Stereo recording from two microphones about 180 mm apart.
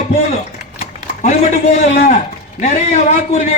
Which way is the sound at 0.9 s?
40° left (ahead or behind).